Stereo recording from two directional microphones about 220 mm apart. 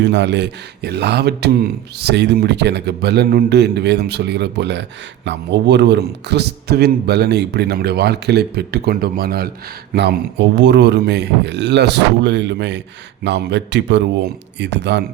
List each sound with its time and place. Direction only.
0.0 s speech: 55° right (ahead or behind)